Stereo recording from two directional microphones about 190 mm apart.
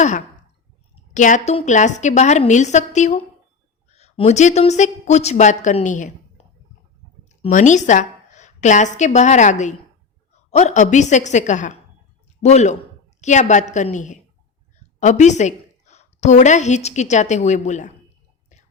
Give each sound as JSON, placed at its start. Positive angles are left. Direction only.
{"t": 1.1, "sound": "a woman's voice", "side_deg": 40}
{"t": 7.4, "sound": "a woman's voice", "side_deg": 40}